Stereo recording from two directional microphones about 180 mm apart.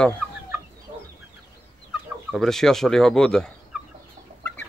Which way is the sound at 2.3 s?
Centre (ahead or behind).